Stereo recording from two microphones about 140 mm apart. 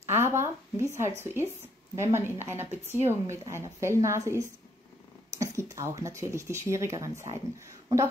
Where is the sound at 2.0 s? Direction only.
20° right (ahead or behind).